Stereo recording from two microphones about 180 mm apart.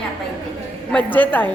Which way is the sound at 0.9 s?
10° left (ahead or behind).